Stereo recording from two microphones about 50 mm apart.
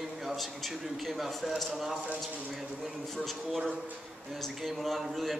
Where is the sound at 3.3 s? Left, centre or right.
Centre.